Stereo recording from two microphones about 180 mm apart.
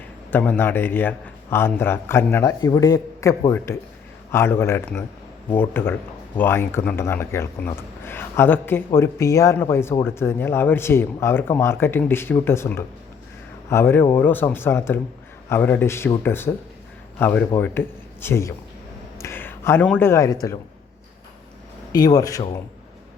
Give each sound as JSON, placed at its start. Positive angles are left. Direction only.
{"t": 0.3, "sound": "speech", "side_deg": 10}
{"t": 19.2, "sound": "a sound", "side_deg": 10}
{"t": 20.0, "sound": "speech", "side_deg": 15}
{"t": 21.9, "sound": "speech", "side_deg": 20}